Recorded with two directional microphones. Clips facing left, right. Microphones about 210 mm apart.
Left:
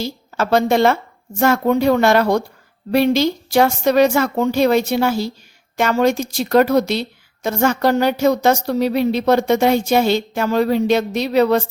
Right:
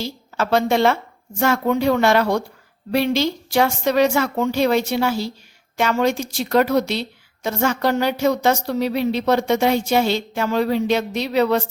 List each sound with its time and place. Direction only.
0.0 s a woman's voice: 45° left (ahead or behind)